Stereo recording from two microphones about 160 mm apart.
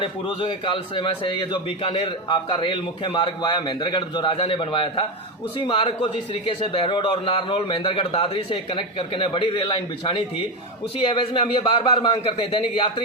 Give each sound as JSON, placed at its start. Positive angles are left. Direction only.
{"t": 0.0, "sound": "a man's voice", "side_deg": 30}